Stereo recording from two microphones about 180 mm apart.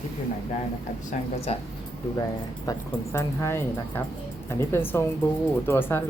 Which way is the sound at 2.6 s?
15° left (ahead or behind).